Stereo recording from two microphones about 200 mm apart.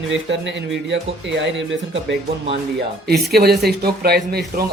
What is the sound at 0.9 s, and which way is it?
Speech, 65° right (ahead or behind).